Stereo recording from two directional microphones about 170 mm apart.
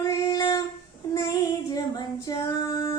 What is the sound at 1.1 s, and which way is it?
Child singing, 20° left (ahead or behind).